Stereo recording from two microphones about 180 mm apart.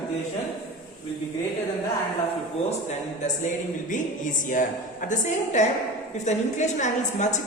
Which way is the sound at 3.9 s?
45° left (ahead or behind).